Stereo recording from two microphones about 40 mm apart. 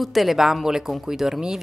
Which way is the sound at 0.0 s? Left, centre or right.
Centre.